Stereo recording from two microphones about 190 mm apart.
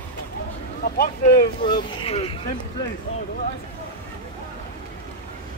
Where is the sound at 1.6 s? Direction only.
25° left (ahead or behind).